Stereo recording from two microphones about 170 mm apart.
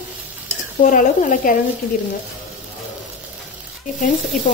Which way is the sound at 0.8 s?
50° left (ahead or behind).